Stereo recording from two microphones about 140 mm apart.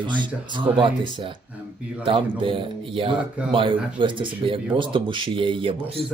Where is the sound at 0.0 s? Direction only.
35° right (ahead or behind).